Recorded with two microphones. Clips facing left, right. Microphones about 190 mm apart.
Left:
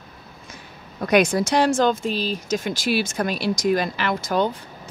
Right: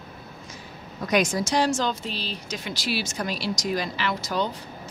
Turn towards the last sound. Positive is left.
turn(degrees=50)  # may be behind; listen again after turning